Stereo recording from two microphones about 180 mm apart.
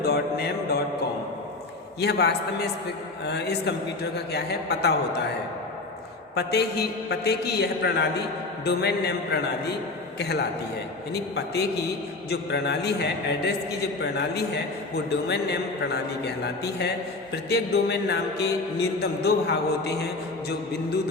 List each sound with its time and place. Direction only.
0.0 s mantra: 60° left (ahead or behind)
2.0 s a man's voice: 65° left (ahead or behind)
4.3 s mantra: 65° left (ahead or behind)
6.3 s mantra: 65° left (ahead or behind)
7.1 s a man's voice: 65° left (ahead or behind)
10.2 s mantra: 65° left (ahead or behind)
12.3 s a man's voice: 70° left (ahead or behind)
14.0 s mantra: 65° left (ahead or behind)
14.9 s a man's voice: 65° left (ahead or behind)
17.3 s mantra: 65° left (ahead or behind)